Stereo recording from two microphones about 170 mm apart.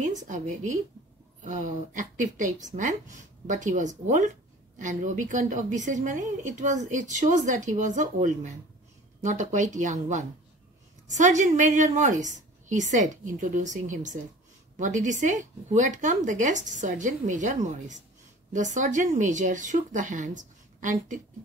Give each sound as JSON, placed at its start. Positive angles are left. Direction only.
{"t": 0.0, "sound": "a woman's voice", "side_deg": -50}